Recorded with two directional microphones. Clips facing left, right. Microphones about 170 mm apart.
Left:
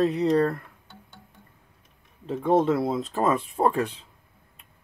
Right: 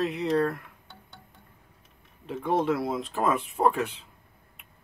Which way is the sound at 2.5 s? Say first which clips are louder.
Left 4 dB; 25° left (ahead or behind).